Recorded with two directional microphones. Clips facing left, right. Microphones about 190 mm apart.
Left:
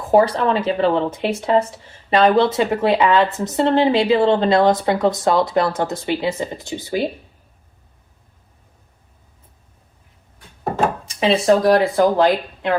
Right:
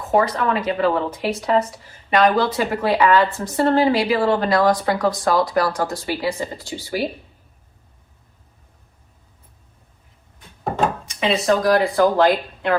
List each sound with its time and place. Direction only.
0.1 s speech: 30° left (ahead or behind)
11.0 s speech: 30° left (ahead or behind)
12.0 s speech: 15° left (ahead or behind)